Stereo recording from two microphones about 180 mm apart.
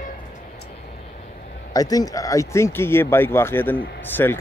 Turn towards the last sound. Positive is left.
turn(degrees=10)  # may be behind; listen again after turning